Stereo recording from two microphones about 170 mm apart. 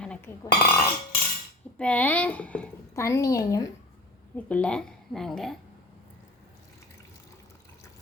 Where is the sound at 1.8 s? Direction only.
10° left (ahead or behind).